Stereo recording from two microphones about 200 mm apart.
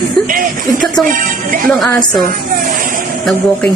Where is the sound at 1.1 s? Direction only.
45° right (ahead or behind).